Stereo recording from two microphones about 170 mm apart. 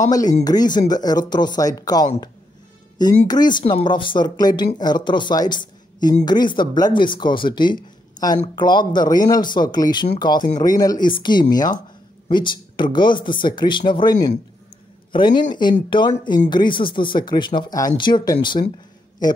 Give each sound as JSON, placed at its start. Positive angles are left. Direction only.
{"t": 0.4, "sound": "speech", "side_deg": 25}
{"t": 3.3, "sound": "speech", "side_deg": 25}